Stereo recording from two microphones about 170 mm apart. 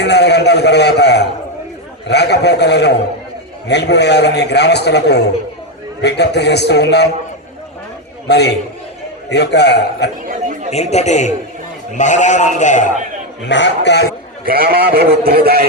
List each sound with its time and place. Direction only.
0.0 s a sound: 85° left
2.0 s a man's voice: 80° left
8.3 s a man's voice: 80° left
10.2 s speech: 50° right (ahead or behind)
10.7 s a man's voice: 40° left (ahead or behind)
13.4 s a man's voice: 90° left
14.4 s a man's voice: 65° right (ahead or behind)